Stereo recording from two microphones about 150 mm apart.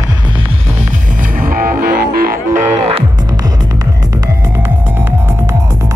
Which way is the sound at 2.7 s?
45° right (ahead or behind).